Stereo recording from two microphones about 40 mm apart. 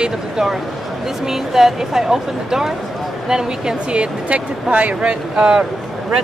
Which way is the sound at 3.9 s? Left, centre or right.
Right.